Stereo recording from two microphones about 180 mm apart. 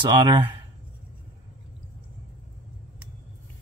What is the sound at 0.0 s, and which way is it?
Speech, 25° right (ahead or behind).